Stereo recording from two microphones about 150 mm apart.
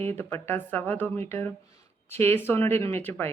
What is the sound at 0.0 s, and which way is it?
Speech, 15° left (ahead or behind).